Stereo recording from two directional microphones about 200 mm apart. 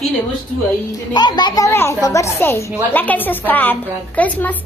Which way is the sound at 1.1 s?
20° left (ahead or behind).